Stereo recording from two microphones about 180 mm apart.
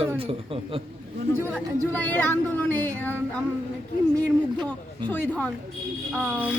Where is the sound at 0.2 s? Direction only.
30° right (ahead or behind).